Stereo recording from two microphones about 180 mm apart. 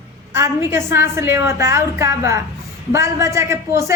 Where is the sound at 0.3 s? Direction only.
15° right (ahead or behind).